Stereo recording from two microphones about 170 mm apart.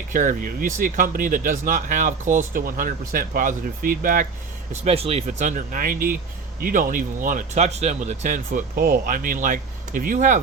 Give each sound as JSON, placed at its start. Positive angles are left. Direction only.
{"t": 0.1, "sound": "speech", "side_deg": -50}
{"t": 4.7, "sound": "speech", "side_deg": -40}